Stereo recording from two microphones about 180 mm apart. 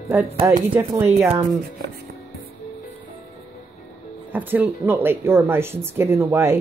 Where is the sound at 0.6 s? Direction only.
10° right (ahead or behind).